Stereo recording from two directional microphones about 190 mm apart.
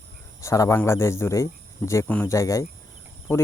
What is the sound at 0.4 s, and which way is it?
Speech, 15° left (ahead or behind).